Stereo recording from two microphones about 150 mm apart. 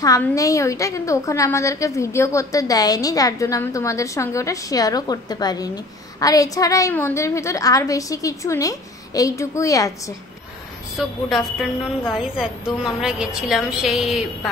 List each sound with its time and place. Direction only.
0.2 s a woman's voice: 20° left (ahead or behind)
11.0 s a woman's voice: centre (ahead or behind)